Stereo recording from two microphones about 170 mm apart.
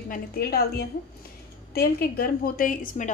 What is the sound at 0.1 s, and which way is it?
A woman's voice, 65° left (ahead or behind).